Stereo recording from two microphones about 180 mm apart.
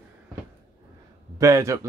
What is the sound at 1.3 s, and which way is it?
Speech, 15° right (ahead or behind).